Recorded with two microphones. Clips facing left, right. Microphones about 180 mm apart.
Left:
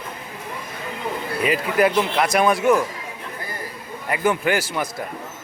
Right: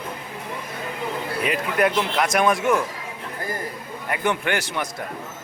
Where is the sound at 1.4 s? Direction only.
5° left (ahead or behind).